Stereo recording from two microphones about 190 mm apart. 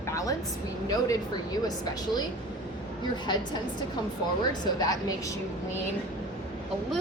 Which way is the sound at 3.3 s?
25° left (ahead or behind).